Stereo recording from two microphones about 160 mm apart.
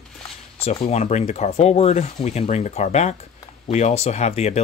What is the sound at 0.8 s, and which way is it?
Speech, 45° left (ahead or behind).